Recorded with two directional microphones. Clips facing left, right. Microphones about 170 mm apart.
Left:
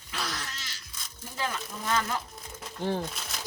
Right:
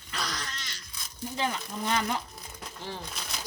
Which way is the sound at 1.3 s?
20° right (ahead or behind).